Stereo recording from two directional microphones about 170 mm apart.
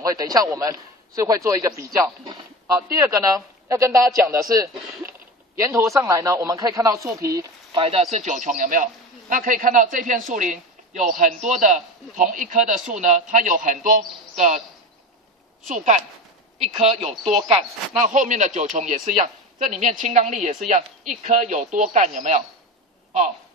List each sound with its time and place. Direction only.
0.0 s speech: 20° right (ahead or behind)
7.8 s a man's voice: 35° right (ahead or behind)
15.6 s a man's voice: 45° right (ahead or behind)
18.0 s a man's voice: 45° right (ahead or behind)